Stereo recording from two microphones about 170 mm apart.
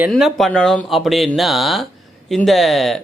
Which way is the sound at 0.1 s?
Centre (ahead or behind).